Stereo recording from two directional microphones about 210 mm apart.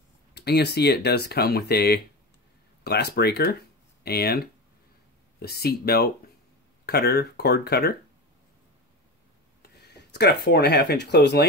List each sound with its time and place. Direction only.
0.3 s speech: 55° left (ahead or behind)
9.6 s speech: 55° left (ahead or behind)